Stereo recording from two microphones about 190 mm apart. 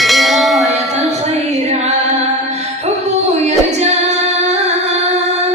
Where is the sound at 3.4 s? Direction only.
35° right (ahead or behind).